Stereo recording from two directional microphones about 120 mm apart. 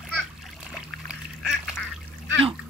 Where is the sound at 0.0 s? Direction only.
Centre (ahead or behind).